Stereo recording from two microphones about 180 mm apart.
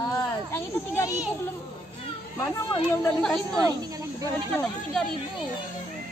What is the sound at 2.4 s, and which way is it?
Speech, 15° left (ahead or behind).